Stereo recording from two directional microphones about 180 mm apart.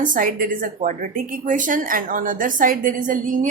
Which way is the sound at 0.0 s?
50° right (ahead or behind).